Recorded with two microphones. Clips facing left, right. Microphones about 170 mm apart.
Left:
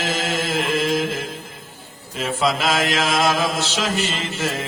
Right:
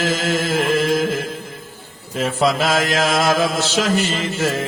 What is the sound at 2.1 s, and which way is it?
Mantra, 40° right (ahead or behind).